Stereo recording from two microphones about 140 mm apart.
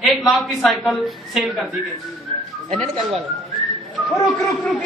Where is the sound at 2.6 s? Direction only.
50° right (ahead or behind).